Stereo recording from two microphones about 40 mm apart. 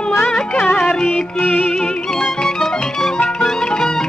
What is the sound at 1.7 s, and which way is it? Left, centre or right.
Music, centre.